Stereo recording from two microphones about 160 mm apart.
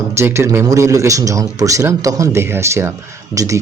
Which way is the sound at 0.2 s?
15° right (ahead or behind).